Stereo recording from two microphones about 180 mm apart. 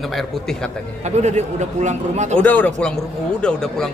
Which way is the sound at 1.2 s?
40° right (ahead or behind).